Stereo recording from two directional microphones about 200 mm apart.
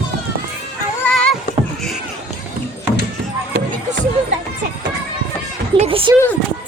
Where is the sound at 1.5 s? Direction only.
45° left (ahead or behind).